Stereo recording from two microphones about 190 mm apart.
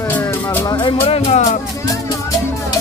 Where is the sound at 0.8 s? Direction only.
30° left (ahead or behind).